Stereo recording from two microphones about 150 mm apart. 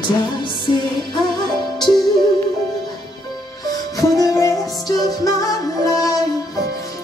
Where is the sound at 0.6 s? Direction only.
30° left (ahead or behind).